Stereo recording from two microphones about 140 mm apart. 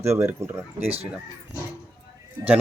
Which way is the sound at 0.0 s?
20° right (ahead or behind).